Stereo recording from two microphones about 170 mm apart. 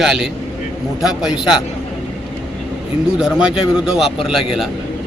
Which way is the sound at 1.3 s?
25° left (ahead or behind).